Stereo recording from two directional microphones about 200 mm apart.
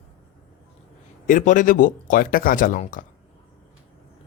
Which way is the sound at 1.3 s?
40° left (ahead or behind).